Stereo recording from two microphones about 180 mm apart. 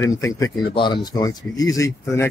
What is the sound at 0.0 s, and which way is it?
Speech, 15° left (ahead or behind).